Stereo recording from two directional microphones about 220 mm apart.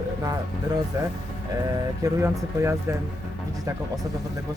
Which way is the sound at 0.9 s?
15° right (ahead or behind).